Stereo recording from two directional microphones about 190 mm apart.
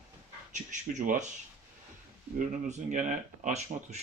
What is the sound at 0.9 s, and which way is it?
Speech, 40° right (ahead or behind).